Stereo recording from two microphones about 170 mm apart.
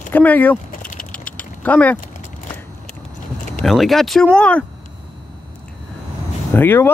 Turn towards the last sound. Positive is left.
turn(degrees=15)  # may be behind; listen again after turning